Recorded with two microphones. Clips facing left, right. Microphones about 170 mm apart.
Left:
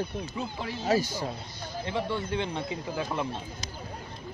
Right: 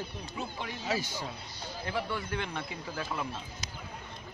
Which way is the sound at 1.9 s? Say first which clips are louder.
Left 4 dB; 25° left (ahead or behind).